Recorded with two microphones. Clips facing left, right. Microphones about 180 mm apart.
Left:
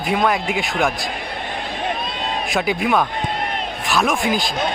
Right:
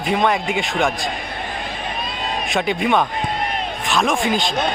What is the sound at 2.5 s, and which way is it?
A man's voice, centre (ahead or behind).